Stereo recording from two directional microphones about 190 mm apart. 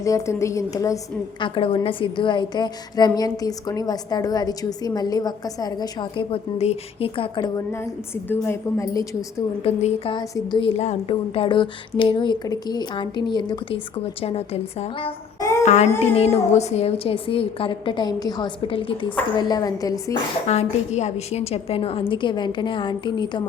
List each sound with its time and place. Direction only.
0.0 s a woman's voice: 15° left (ahead or behind)
9.6 s a woman's voice: 30° left (ahead or behind)
15.6 s child singing: 40° left (ahead or behind)
16.1 s a woman's voice: 35° left (ahead or behind)
20.5 s a woman's voice: 35° left (ahead or behind)